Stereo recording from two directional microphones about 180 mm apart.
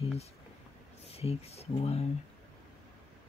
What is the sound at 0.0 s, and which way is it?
Speech, 35° left (ahead or behind).